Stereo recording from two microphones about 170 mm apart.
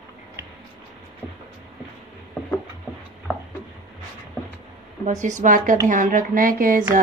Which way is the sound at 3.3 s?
5° left (ahead or behind).